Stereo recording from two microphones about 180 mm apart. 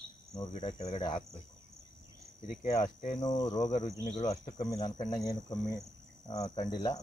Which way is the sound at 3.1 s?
20° left (ahead or behind).